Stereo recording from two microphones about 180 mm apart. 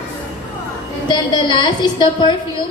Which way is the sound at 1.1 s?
25° left (ahead or behind).